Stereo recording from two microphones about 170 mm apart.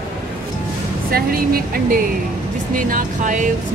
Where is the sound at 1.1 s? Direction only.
60° right (ahead or behind).